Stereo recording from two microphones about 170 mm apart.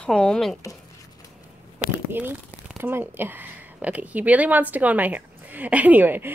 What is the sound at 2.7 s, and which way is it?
Speech, 15° right (ahead or behind).